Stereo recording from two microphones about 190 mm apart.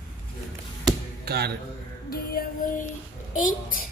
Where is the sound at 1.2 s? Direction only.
60° right (ahead or behind).